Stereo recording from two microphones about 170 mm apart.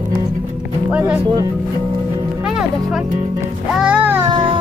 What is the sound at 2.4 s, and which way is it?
Speech, 5° right (ahead or behind).